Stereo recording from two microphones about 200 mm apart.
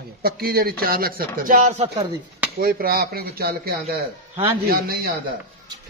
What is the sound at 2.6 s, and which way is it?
Speech, 50° right (ahead or behind).